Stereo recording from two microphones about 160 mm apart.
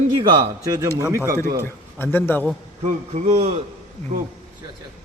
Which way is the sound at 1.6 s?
15° left (ahead or behind).